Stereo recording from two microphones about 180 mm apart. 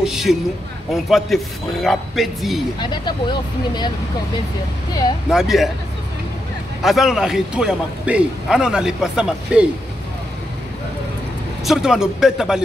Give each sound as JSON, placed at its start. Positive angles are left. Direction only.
{"t": 0.0, "sound": "a sound", "side_deg": 0}
{"t": 1.1, "sound": "a man's voice", "side_deg": 0}
{"t": 2.8, "sound": "speech", "side_deg": 25}
{"t": 5.3, "sound": "a man's voice", "side_deg": 0}
{"t": 6.8, "sound": "a man's voice", "side_deg": 0}
{"t": 11.6, "sound": "a man's voice", "side_deg": 0}